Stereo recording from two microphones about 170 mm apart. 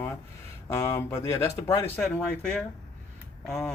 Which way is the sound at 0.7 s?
20° left (ahead or behind).